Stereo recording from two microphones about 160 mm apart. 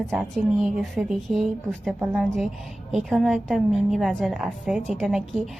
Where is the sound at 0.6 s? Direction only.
Centre (ahead or behind).